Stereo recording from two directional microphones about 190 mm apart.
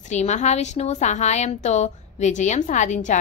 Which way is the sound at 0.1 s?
35° left (ahead or behind).